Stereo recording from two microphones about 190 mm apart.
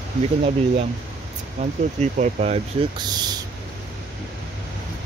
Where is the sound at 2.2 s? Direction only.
35° right (ahead or behind).